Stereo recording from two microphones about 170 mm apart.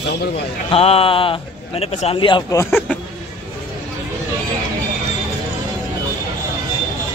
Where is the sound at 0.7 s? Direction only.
35° left (ahead or behind).